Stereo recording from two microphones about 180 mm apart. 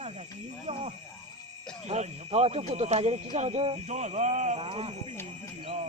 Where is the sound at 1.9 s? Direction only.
40° right (ahead or behind).